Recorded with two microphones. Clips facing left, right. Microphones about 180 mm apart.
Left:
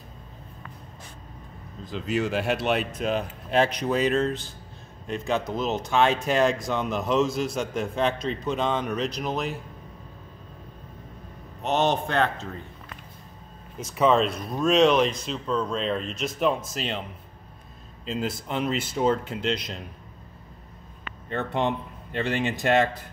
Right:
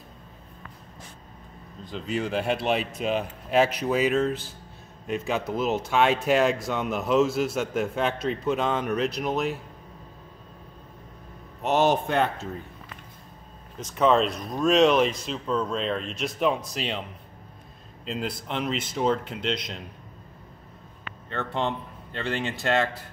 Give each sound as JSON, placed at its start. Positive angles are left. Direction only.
{"t": 1.9, "sound": "speech", "side_deg": 0}
{"t": 11.6, "sound": "a man's voice", "side_deg": -10}
{"t": 13.7, "sound": "speech", "side_deg": 5}
{"t": 18.0, "sound": "speech", "side_deg": 0}
{"t": 21.3, "sound": "speech", "side_deg": 15}